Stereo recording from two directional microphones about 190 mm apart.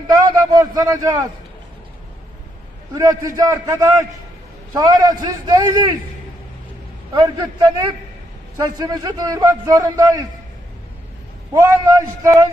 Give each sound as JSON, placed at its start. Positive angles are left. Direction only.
{"t": 0.2, "sound": "a sound", "side_deg": -20}
{"t": 2.9, "sound": "a man's voice", "side_deg": -20}
{"t": 7.3, "sound": "a man's voice", "side_deg": -20}
{"t": 11.5, "sound": "a man's voice", "side_deg": -15}